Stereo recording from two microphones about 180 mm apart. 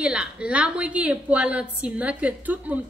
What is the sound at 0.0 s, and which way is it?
A woman's voice, 5° right (ahead or behind).